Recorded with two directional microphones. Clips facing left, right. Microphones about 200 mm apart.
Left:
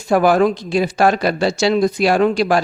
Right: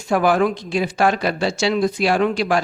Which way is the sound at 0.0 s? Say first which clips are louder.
Left 3 dB; 40° left (ahead or behind).